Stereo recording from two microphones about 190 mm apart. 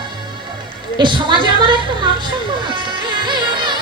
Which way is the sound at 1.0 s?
25° right (ahead or behind).